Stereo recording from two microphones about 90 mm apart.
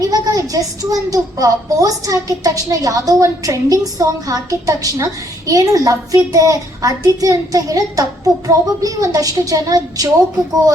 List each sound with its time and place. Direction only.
0.0 s a child's voice: 40° right (ahead or behind)